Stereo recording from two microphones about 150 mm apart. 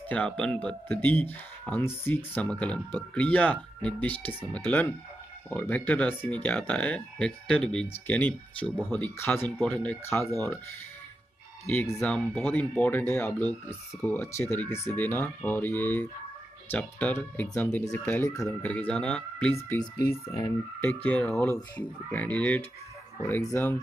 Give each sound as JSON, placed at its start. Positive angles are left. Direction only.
{"t": 0.1, "sound": "speech", "side_deg": 10}
{"t": 11.6, "sound": "speech", "side_deg": 10}
{"t": 18.5, "sound": "speech", "side_deg": 10}